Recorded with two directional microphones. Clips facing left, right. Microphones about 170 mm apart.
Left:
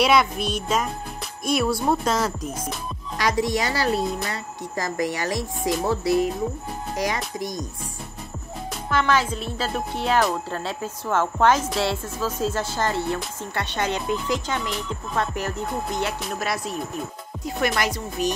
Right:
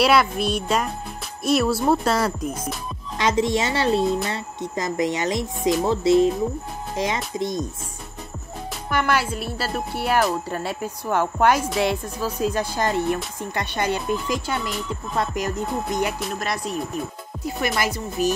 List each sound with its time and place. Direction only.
0.0 s speech: 5° right (ahead or behind)
3.2 s speech: 25° right (ahead or behind)
8.9 s speech: 10° right (ahead or behind)
16.2 s speech: centre (ahead or behind)